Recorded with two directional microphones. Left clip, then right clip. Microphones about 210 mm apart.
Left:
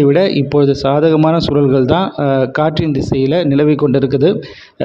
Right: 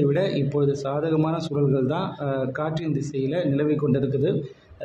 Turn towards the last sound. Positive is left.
turn(degrees=40)  # may be behind; listen again after turning